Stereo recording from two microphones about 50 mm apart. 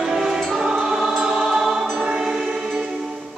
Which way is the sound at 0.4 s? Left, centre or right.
Centre.